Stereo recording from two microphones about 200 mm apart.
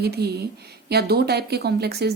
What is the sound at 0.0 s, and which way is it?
A woman's voice, 55° right (ahead or behind).